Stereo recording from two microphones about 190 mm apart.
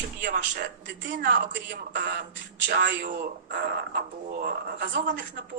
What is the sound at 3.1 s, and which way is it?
Speech, 50° right (ahead or behind).